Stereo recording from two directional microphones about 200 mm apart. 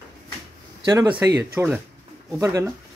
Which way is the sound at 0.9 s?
15° right (ahead or behind).